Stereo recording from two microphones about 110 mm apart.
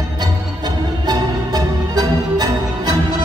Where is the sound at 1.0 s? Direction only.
40° right (ahead or behind).